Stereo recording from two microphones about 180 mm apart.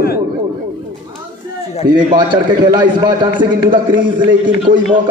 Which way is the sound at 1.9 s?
25° right (ahead or behind).